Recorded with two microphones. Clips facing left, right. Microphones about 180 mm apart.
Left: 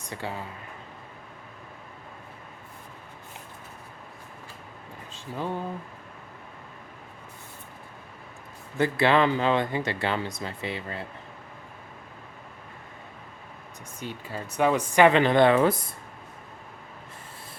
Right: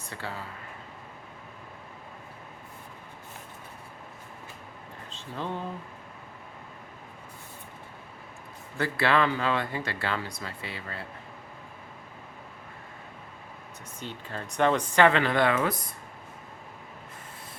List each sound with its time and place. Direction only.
0.0 s speech: 15° left (ahead or behind)
5.1 s speech: 10° left (ahead or behind)
8.8 s speech: 20° left (ahead or behind)
14.0 s speech: 10° left (ahead or behind); by 15.7 s 25° left (ahead or behind)